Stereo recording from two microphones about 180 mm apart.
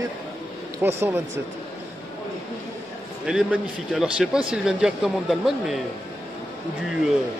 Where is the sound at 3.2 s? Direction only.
5° right (ahead or behind).